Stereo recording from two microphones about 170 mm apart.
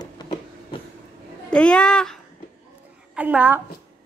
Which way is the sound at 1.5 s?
5° left (ahead or behind).